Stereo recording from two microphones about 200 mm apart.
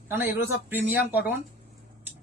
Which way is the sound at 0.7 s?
10° right (ahead or behind).